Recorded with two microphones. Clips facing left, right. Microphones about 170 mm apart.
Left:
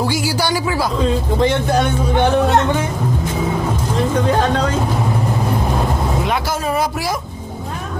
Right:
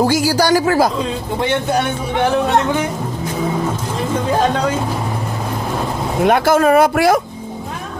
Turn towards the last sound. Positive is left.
turn(degrees=-60)  # may be behind; listen again after turning